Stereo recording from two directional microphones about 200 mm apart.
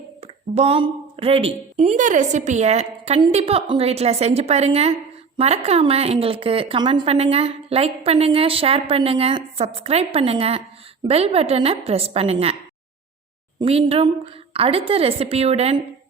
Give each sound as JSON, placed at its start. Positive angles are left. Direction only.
{"t": 0.2, "sound": "a woman's voice", "side_deg": -30}
{"t": 13.6, "sound": "a woman's voice", "side_deg": -30}